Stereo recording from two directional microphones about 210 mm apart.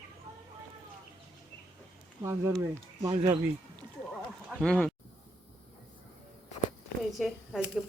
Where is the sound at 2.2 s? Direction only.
15° right (ahead or behind).